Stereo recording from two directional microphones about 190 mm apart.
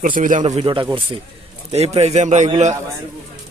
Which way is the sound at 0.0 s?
45° right (ahead or behind).